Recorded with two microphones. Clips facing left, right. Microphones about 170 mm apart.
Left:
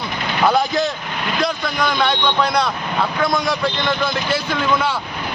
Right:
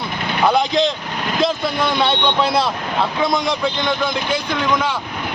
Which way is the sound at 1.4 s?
25° right (ahead or behind).